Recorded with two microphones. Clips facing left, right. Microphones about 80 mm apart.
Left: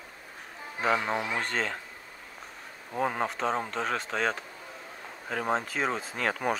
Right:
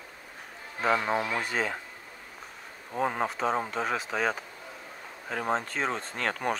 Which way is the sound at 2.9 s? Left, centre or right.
Centre.